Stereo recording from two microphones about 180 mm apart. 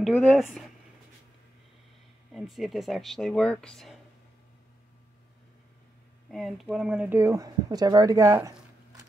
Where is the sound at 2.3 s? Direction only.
Centre (ahead or behind).